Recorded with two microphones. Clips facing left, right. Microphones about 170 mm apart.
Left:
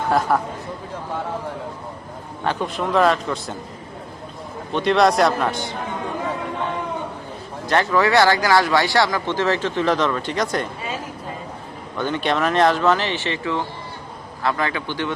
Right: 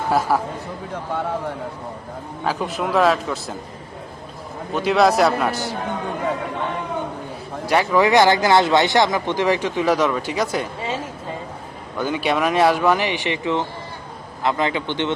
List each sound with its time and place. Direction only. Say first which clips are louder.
0.1 s a man's voice: even; 5° right (ahead or behind)
2.4 s a man's voice: even; 5° right (ahead or behind)
4.7 s a man's voice: even; 5° right (ahead or behind)
7.7 s speech: right 1 dB; 15° right (ahead or behind)
10.8 s speech: right 3 dB; 25° right (ahead or behind)
11.9 s a man's voice: right 1 dB; 10° right (ahead or behind)